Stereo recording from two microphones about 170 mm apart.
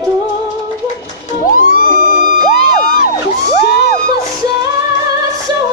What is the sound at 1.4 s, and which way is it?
Music, 50° left (ahead or behind).